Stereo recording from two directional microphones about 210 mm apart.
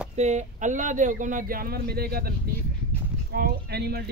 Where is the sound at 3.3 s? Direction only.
45° right (ahead or behind).